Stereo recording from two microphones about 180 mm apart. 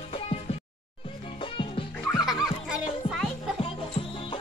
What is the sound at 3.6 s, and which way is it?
Music, 30° left (ahead or behind).